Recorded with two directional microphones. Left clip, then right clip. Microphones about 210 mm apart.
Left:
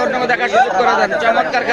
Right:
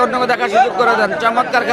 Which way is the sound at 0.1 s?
30° right (ahead or behind).